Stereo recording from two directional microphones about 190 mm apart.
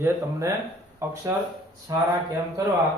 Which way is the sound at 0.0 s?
15° right (ahead or behind).